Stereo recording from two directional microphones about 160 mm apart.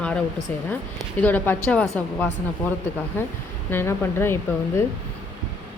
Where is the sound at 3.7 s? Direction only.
15° left (ahead or behind).